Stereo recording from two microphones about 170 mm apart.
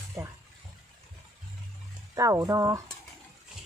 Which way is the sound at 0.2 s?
5° right (ahead or behind).